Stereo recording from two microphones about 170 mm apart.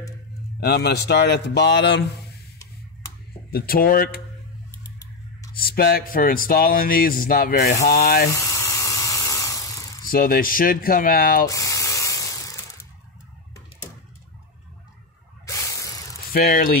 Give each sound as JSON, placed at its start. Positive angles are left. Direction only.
{"t": 0.6, "sound": "speech", "side_deg": 75}
{"t": 3.5, "sound": "speech", "side_deg": 60}
{"t": 5.6, "sound": "speech", "side_deg": 60}
{"t": 8.3, "sound": "electric toothbrush", "side_deg": 20}
{"t": 10.0, "sound": "speech", "side_deg": 60}
{"t": 11.4, "sound": "spray", "side_deg": 20}
{"t": 15.4, "sound": "spray", "side_deg": 20}
{"t": 16.3, "sound": "speech", "side_deg": 60}